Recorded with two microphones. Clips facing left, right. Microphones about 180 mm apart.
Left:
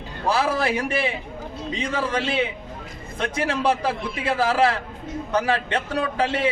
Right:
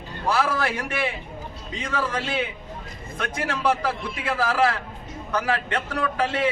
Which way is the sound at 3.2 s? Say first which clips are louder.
Left 4 dB; 30° left (ahead or behind).